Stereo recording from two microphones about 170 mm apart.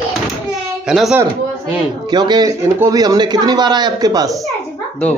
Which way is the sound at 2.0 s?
25° right (ahead or behind).